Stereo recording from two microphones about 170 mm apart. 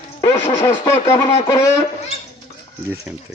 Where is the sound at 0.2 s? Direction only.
15° left (ahead or behind).